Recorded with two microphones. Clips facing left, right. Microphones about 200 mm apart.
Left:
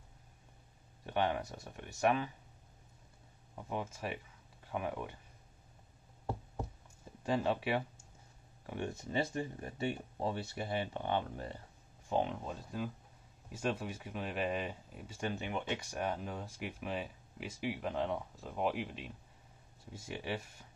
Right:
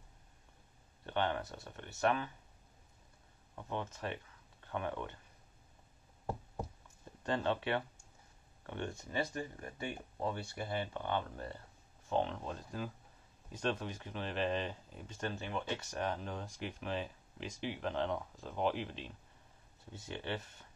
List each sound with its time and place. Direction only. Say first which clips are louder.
1.0 s speech: left 2 dB; 10° left (ahead or behind)
3.5 s speech: left 1 dB; 10° left (ahead or behind)
7.2 s speech: left 1 dB; 10° left (ahead or behind)
8.9 s speech: left 4 dB; 25° left (ahead or behind)